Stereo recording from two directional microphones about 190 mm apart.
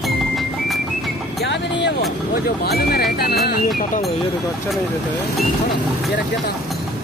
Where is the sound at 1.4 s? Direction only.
70° left (ahead or behind).